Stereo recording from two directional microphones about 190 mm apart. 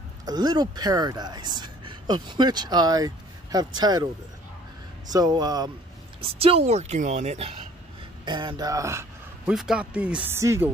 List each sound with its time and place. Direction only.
0.2 s speech: 20° right (ahead or behind)
5.1 s speech: 20° right (ahead or behind)
6.2 s speech: 30° right (ahead or behind)
9.5 s speech: 5° right (ahead or behind)